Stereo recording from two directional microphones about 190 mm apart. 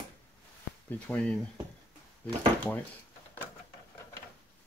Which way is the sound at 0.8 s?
5° left (ahead or behind).